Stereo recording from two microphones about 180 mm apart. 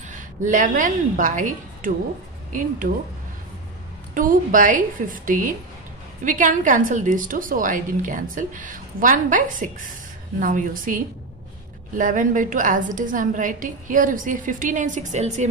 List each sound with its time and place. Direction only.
0.1 s a woman's voice: 45° right (ahead or behind)
4.1 s a woman's voice: 50° right (ahead or behind)